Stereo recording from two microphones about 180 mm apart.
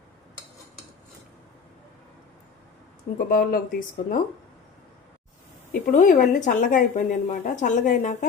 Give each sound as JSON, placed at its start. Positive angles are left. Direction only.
{"t": 3.2, "sound": "speech", "side_deg": 50}
{"t": 5.8, "sound": "speech", "side_deg": 45}